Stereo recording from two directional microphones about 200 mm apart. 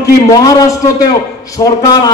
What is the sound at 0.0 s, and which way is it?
A man's voice, 15° left (ahead or behind).